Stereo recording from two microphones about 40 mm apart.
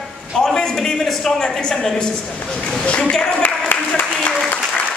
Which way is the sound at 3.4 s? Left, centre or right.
Left.